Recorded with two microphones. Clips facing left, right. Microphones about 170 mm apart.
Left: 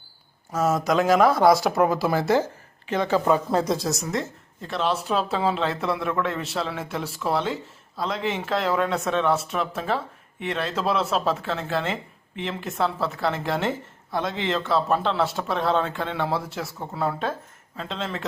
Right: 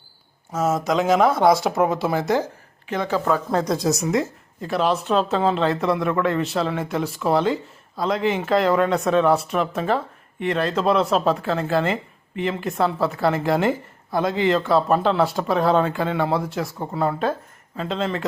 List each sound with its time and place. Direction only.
0.9 s speech: 20° right (ahead or behind)
1.3 s speech: centre (ahead or behind)
3.1 s speech: 10° left (ahead or behind)